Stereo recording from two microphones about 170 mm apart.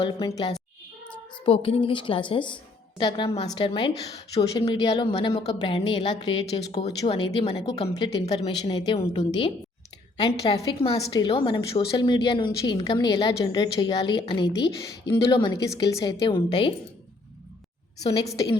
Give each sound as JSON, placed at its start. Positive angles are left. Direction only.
{"t": 0.0, "sound": "a woman's voice", "side_deg": 25}
{"t": 5.1, "sound": "speech", "side_deg": 40}
{"t": 5.5, "sound": "a woman's voice", "side_deg": 25}
{"t": 7.9, "sound": "a woman's voice", "side_deg": 25}
{"t": 10.2, "sound": "a woman's voice", "side_deg": 25}
{"t": 18.0, "sound": "a woman's voice", "side_deg": 20}